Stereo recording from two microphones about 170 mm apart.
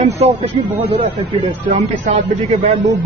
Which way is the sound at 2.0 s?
45° right (ahead or behind).